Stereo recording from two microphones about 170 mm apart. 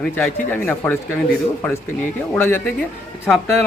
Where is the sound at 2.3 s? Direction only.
15° left (ahead or behind).